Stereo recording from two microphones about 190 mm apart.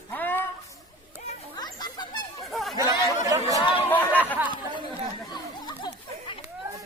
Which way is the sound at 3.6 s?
25° left (ahead or behind).